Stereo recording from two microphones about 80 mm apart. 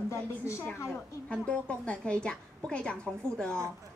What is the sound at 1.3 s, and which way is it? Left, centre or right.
A woman's voice, centre.